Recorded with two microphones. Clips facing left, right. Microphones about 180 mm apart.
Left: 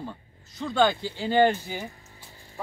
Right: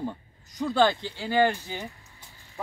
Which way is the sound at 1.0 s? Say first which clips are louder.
Left 2 dB; 15° left (ahead or behind).